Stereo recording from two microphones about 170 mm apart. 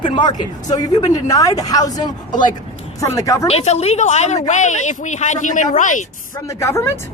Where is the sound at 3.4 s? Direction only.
40° left (ahead or behind).